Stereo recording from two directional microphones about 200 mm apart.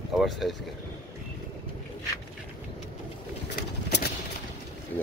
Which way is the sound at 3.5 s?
55° left (ahead or behind).